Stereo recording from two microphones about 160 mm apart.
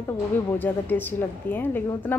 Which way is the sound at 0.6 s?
10° left (ahead or behind).